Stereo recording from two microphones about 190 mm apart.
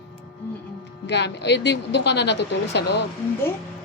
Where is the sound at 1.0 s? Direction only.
65° left (ahead or behind).